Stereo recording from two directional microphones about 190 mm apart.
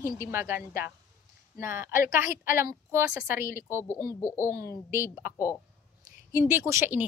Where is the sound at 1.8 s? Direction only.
45° left (ahead or behind).